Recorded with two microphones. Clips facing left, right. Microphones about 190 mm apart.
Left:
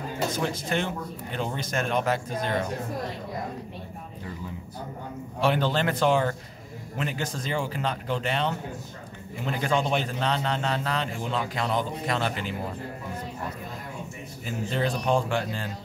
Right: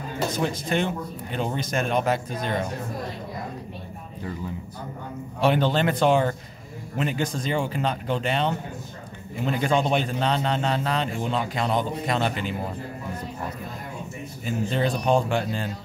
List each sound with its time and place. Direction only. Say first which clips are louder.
0.4 s speech: right 5 dB; 15° right (ahead or behind)
5.4 s a man's voice: right 3 dB; 20° right (ahead or behind)
9.6 s a man's voice: right 2 dB; 20° right (ahead or behind)
14.4 s a man's voice: right 3 dB; 25° right (ahead or behind)